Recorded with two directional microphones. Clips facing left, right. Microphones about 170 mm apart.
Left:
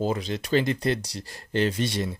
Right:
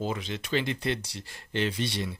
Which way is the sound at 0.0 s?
40° left (ahead or behind).